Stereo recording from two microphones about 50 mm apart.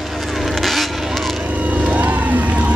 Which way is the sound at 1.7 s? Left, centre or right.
Right.